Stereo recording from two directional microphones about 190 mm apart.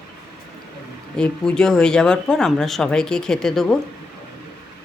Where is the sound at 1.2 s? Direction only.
5° left (ahead or behind).